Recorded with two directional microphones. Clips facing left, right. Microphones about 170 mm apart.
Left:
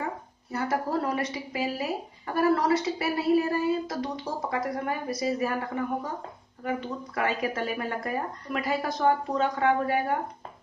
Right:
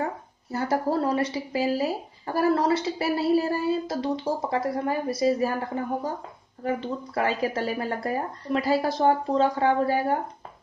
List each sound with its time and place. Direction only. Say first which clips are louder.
0.0 s a woman's voice: right 4 dB; 35° right (ahead or behind)
7.2 s a woman's voice: right 2 dB; 30° right (ahead or behind)